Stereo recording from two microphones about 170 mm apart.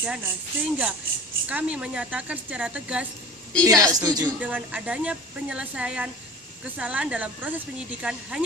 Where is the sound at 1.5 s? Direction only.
5° right (ahead or behind).